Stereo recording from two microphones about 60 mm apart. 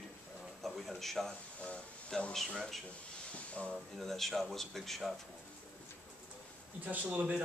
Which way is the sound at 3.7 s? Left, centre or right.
Centre.